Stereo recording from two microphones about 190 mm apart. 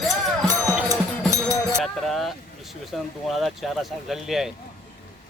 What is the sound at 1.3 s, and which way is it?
Music, 15° right (ahead or behind).